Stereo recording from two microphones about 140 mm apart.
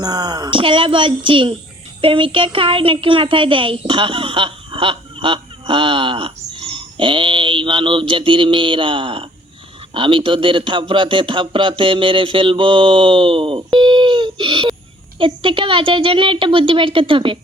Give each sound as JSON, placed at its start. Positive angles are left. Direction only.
{"t": 0.0, "sound": "a man's voice", "side_deg": -30}